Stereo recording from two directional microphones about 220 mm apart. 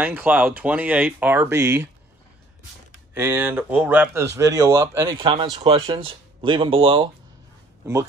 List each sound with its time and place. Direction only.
0.0 s speech: 10° right (ahead or behind)
3.2 s speech: 10° right (ahead or behind)